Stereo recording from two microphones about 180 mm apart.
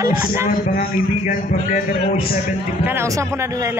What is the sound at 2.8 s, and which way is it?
Speech, 15° right (ahead or behind).